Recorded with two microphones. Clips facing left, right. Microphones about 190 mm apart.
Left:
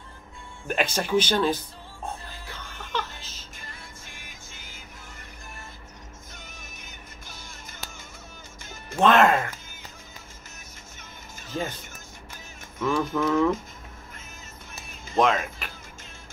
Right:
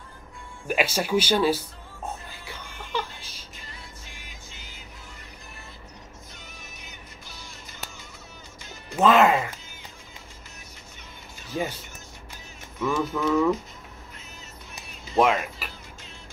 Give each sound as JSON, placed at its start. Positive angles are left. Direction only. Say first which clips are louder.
{"t": 0.7, "sound": "speech", "louder": "right 1 dB", "side_deg": -10}
{"t": 2.4, "sound": "music", "louder": "even", "side_deg": -10}
{"t": 3.5, "sound": "music", "louder": "even", "side_deg": 50}
{"t": 6.3, "sound": "music", "louder": "even", "side_deg": 50}
{"t": 8.9, "sound": "speech", "louder": "even", "side_deg": -5}
{"t": 11.5, "sound": "speech", "louder": "right 2 dB", "side_deg": -10}
{"t": 12.8, "sound": "speech", "louder": "left 1 dB", "side_deg": -5}
{"t": 15.1, "sound": "speech", "louder": "right 1 dB", "side_deg": -5}